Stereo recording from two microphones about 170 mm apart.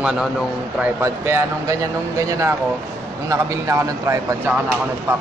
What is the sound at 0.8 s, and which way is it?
Speech, 15° right (ahead or behind).